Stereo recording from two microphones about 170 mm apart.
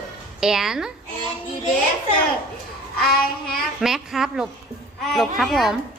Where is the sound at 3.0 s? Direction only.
60° left (ahead or behind).